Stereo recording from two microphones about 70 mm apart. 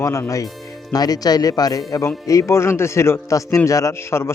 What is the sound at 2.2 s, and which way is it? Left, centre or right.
A man's voice, left.